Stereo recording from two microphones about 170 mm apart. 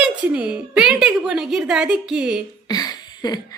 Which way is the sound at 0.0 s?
5° right (ahead or behind).